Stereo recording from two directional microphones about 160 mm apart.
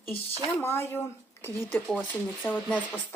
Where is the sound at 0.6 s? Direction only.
15° left (ahead or behind).